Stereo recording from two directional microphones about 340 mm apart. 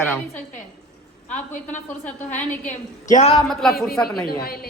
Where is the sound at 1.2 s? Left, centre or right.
Left.